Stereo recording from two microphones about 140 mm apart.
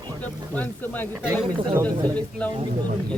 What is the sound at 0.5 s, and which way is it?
Speech, 10° left (ahead or behind).